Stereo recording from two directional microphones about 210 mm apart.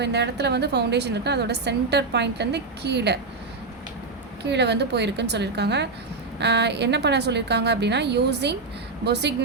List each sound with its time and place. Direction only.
0.0 s a woman's voice: 55° right (ahead or behind)
4.4 s a woman's voice: 55° right (ahead or behind)